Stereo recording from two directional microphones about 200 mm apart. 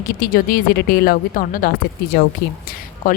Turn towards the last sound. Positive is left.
turn(degrees=40)  # may be behind; listen again after turning